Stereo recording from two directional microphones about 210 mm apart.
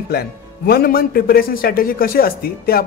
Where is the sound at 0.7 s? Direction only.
45° left (ahead or behind).